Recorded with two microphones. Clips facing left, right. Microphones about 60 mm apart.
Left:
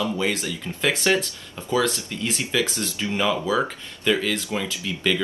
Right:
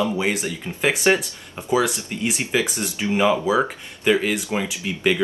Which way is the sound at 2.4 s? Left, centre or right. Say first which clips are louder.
Even; right.